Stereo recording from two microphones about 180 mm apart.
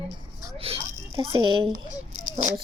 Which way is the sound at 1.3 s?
25° right (ahead or behind).